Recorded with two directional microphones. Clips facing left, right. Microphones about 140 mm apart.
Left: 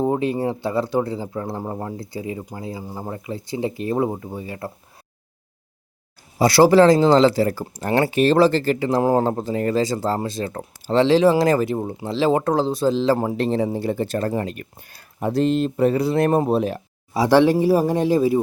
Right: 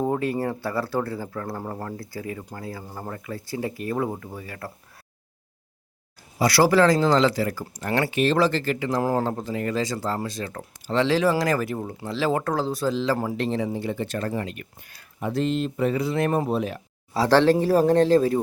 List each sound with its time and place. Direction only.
0.0 s speech: 20° left (ahead or behind)
6.4 s speech: 25° left (ahead or behind)
17.2 s speech: 15° left (ahead or behind)